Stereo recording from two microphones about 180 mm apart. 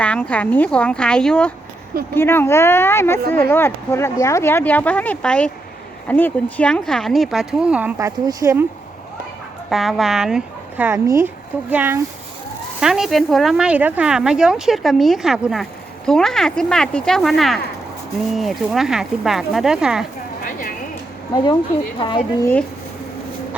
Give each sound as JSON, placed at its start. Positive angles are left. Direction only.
{"t": 0.0, "sound": "speech", "side_deg": 5}
{"t": 7.9, "sound": "speech", "side_deg": -20}
{"t": 9.6, "sound": "speech", "side_deg": 0}
{"t": 20.4, "sound": "a sound", "side_deg": 50}
{"t": 21.9, "sound": "speech", "side_deg": 30}